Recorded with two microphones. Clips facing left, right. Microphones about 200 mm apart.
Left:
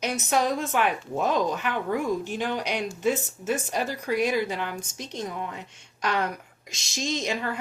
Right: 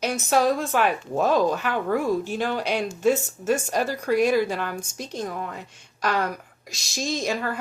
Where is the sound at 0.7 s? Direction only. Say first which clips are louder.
Right 3 dB; 35° right (ahead or behind).